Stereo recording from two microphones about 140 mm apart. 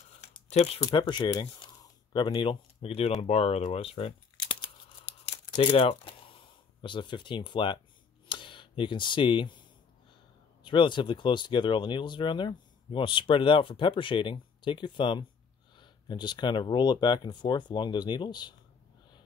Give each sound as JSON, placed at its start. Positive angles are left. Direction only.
{"t": 0.2, "sound": "a sound", "side_deg": 50}
{"t": 0.8, "sound": "speech", "side_deg": 35}
{"t": 10.6, "sound": "speech", "side_deg": 35}